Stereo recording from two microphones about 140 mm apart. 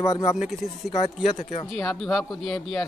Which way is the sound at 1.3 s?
55° left (ahead or behind).